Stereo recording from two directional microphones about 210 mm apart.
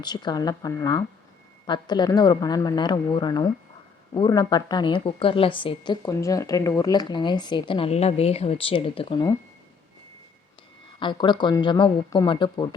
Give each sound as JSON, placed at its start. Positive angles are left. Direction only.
{"t": 0.0, "sound": "a woman's voice", "side_deg": 20}
{"t": 11.0, "sound": "a woman's voice", "side_deg": 20}